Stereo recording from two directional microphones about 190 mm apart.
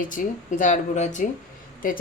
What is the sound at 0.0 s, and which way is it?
Speech, 45° left (ahead or behind).